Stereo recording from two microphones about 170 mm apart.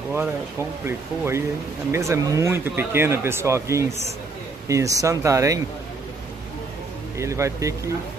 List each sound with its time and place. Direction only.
0.1 s speech: 15° right (ahead or behind)
7.2 s speech: 15° right (ahead or behind)